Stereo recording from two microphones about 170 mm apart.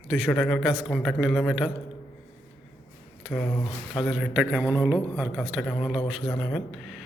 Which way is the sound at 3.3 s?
5° left (ahead or behind).